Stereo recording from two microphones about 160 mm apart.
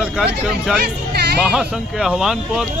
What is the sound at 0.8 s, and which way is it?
Music, 85° right.